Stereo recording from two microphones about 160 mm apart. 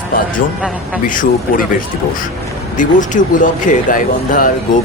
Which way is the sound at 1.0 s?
55° left (ahead or behind).